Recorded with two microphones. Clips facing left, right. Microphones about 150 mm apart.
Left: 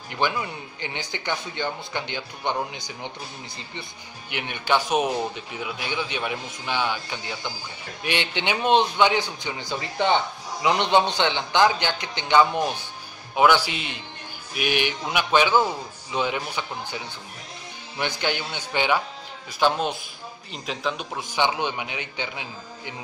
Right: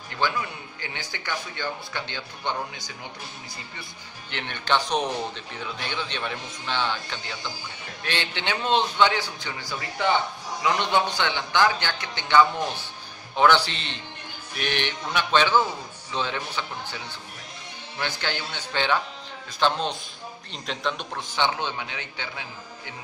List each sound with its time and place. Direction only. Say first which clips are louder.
0.1 s speech: left 2 dB; 20° left (ahead or behind)
4.3 s a man's voice: left 2 dB; 10° left (ahead or behind)